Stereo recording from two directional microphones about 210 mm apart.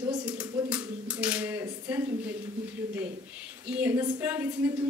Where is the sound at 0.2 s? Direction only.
5° right (ahead or behind).